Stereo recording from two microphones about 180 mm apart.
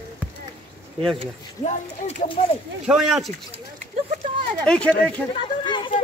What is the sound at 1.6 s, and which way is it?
Speech, 40° left (ahead or behind).